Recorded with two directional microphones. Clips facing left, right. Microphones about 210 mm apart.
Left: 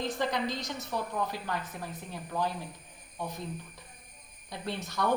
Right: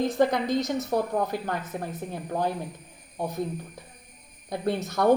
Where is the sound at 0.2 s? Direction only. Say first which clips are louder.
Right 9 dB; 50° right (ahead or behind).